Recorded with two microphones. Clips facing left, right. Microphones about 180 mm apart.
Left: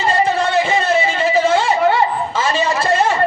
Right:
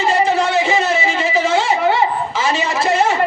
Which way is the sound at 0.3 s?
55° left (ahead or behind).